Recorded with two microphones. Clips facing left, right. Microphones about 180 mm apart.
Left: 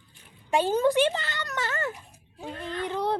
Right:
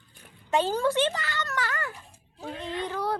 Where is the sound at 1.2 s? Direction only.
25° left (ahead or behind).